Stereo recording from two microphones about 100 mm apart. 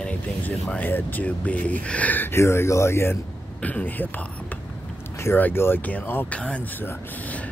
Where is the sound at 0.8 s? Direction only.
15° left (ahead or behind).